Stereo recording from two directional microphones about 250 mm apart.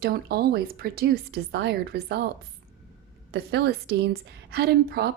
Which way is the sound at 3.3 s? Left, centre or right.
Right.